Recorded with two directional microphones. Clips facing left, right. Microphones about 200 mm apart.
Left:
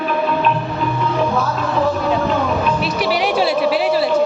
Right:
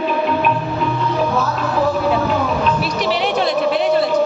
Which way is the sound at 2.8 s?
10° left (ahead or behind).